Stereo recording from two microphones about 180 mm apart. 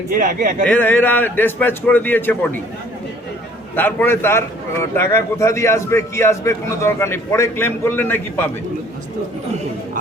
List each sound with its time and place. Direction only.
0.1 s speech: 50° right (ahead or behind)
0.7 s a man's voice: 10° left (ahead or behind)
3.8 s a man's voice: 10° left (ahead or behind)